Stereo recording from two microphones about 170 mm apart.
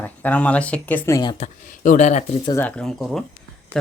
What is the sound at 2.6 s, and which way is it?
Speech, 5° left (ahead or behind).